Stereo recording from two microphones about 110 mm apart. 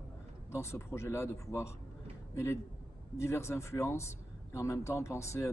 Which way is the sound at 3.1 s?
25° left (ahead or behind).